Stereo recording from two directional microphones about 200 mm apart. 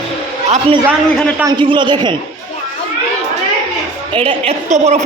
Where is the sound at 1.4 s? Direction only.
20° right (ahead or behind).